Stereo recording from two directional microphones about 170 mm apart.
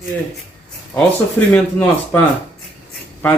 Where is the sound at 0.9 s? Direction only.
10° left (ahead or behind).